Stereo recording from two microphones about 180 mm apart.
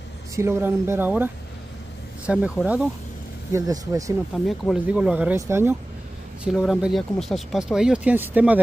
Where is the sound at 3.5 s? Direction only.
20° right (ahead or behind).